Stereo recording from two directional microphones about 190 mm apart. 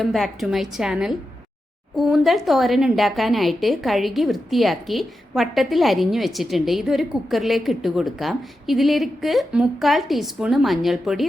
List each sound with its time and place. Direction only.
0.0 s a woman's voice: centre (ahead or behind)